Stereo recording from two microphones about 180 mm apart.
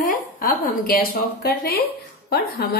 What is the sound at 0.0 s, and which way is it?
A woman's voice, 50° left (ahead or behind).